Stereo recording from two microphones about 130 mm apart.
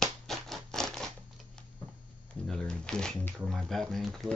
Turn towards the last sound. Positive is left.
turn(degrees=0)  # may be behind; listen again after turning